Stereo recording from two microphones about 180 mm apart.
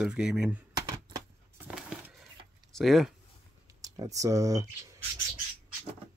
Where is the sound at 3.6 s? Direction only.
20° right (ahead or behind).